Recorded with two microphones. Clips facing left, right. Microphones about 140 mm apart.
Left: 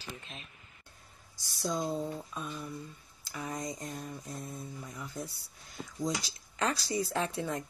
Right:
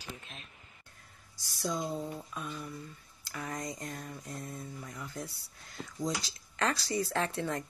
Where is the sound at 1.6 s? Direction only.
15° left (ahead or behind).